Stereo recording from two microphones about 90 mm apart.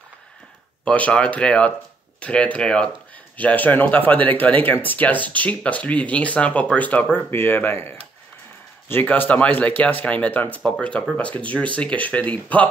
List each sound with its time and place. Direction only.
0.8 s speech: 15° left (ahead or behind)